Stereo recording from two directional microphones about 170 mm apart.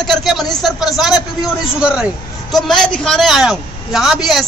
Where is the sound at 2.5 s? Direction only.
Centre (ahead or behind).